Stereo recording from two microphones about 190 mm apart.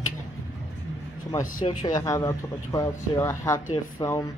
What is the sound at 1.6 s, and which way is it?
Speech, 20° left (ahead or behind).